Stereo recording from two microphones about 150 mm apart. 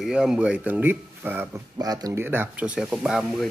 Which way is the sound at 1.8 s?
25° right (ahead or behind).